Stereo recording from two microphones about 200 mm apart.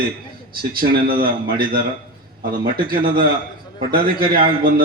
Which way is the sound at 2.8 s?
45° right (ahead or behind).